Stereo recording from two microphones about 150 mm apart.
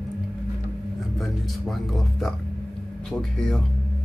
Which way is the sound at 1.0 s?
Centre (ahead or behind).